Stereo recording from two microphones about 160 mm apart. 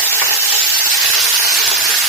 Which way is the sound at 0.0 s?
15° right (ahead or behind).